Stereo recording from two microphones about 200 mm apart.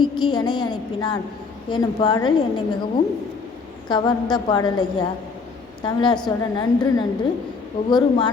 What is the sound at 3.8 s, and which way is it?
A woman's voice, 20° left (ahead or behind).